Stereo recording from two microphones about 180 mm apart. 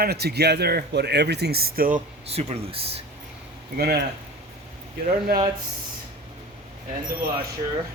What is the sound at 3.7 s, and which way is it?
Speech, 60° right (ahead or behind).